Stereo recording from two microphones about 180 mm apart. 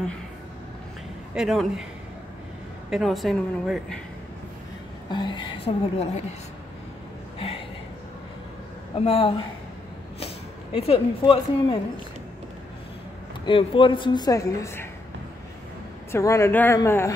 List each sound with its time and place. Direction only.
1.3 s a woman's voice: centre (ahead or behind)
2.9 s a woman's voice: centre (ahead or behind)
5.1 s a woman's voice: 25° left (ahead or behind)
7.3 s a sound: 30° left (ahead or behind)
9.0 s speech: 30° left (ahead or behind)
13.5 s a woman's voice: 30° left (ahead or behind)
16.1 s speech: 15° left (ahead or behind)